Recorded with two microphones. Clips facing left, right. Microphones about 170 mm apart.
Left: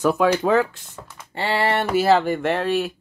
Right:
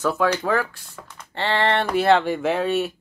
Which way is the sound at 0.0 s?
15° left (ahead or behind).